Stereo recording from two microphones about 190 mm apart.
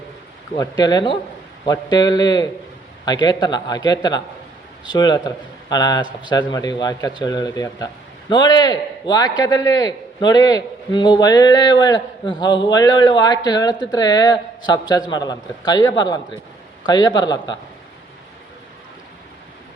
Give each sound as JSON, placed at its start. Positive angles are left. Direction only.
{"t": 0.5, "sound": "a man's voice", "side_deg": 20}